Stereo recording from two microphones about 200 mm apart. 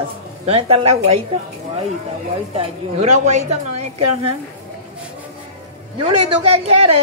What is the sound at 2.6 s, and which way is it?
A woman's voice, 35° right (ahead or behind).